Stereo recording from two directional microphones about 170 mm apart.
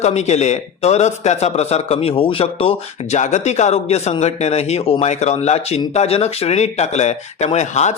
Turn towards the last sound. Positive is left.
turn(degrees=40)  # may be behind; listen again after turning